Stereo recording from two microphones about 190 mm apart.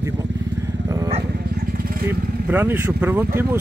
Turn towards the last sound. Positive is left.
turn(degrees=-10)  # may be behind; listen again after turning